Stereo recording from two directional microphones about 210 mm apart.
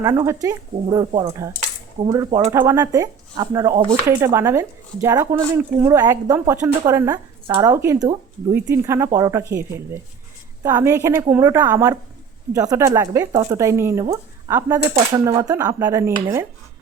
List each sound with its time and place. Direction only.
0.0 s speech: 10° right (ahead or behind)